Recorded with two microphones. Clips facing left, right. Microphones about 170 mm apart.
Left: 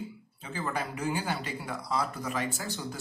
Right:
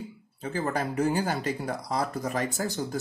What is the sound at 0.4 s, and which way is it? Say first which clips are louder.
Speech: right 5 dB; 45° right (ahead or behind).